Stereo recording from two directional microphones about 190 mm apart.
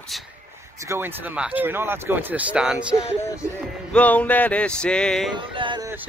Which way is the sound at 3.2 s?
15° left (ahead or behind).